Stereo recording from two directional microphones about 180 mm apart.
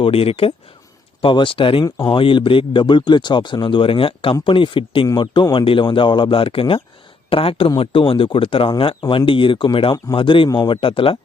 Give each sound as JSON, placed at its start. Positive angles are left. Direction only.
{"t": 0.0, "sound": "speech", "side_deg": 30}